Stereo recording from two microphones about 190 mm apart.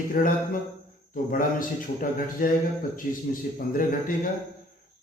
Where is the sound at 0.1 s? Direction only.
45° left (ahead or behind).